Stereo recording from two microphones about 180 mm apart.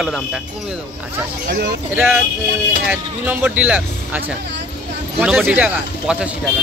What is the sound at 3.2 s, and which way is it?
Speech, 10° right (ahead or behind).